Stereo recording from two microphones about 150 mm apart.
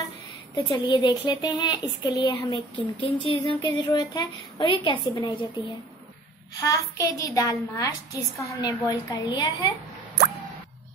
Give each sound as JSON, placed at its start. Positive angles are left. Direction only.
{"t": 0.6, "sound": "a woman's voice", "side_deg": 25}
{"t": 6.6, "sound": "a woman's voice", "side_deg": 25}